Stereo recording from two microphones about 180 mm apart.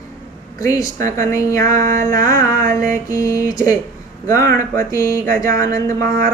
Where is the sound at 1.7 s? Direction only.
50° right (ahead or behind).